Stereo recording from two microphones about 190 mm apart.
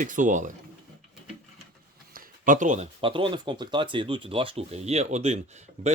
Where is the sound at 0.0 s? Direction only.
45° right (ahead or behind).